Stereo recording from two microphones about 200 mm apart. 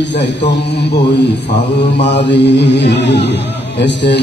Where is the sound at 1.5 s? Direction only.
30° left (ahead or behind).